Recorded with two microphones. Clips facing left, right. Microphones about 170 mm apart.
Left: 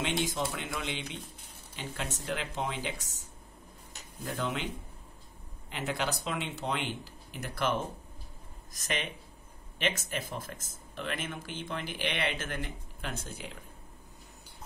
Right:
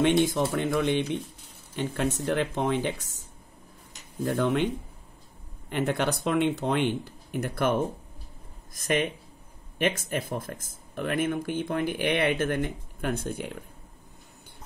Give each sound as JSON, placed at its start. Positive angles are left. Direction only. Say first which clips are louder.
{"t": 0.0, "sound": "speech", "louder": "right 10 dB", "side_deg": -55}
{"t": 5.7, "sound": "speech", "louder": "right 7 dB", "side_deg": -55}
{"t": 8.7, "sound": "speech", "louder": "right 10 dB", "side_deg": -50}